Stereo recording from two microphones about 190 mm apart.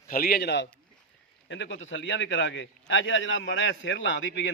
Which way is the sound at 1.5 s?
75° left (ahead or behind).